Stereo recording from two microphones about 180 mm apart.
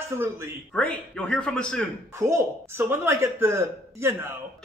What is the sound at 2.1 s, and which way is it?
Speech, 15° right (ahead or behind).